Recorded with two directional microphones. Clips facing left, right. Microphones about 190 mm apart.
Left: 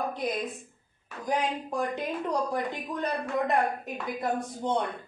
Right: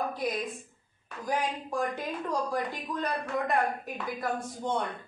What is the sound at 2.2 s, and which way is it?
A woman's voice, 20° left (ahead or behind).